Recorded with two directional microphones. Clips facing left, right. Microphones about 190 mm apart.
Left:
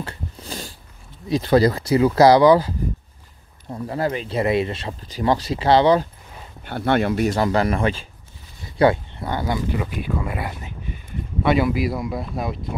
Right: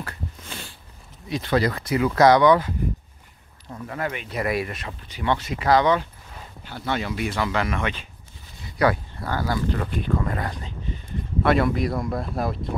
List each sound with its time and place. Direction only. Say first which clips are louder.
0.0 s a sound: left 3 dB; 30° left (ahead or behind)
1.3 s speech: left 6 dB; 35° left (ahead or behind)
3.7 s speech: left 6 dB; 30° left (ahead or behind)
6.6 s speech: left 8 dB; 60° left (ahead or behind); by 9.8 s 20° left (ahead or behind)
9.8 s speech: even; 10° left (ahead or behind)